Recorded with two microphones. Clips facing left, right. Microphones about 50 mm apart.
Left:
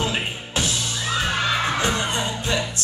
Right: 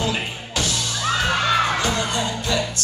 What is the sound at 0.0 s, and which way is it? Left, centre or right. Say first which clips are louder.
Music: even; left.